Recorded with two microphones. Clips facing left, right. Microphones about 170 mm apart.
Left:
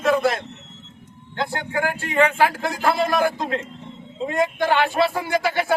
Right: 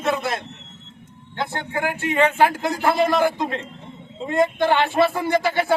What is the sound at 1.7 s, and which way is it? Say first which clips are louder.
A man's voice: right 3 dB; 20° right (ahead or behind).